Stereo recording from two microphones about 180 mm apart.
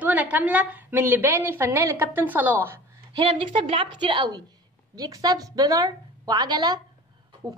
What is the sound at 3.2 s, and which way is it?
A woman's voice, 30° right (ahead or behind).